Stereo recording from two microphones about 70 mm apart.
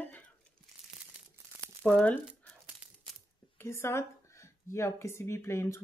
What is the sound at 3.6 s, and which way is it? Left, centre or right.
Speech, left.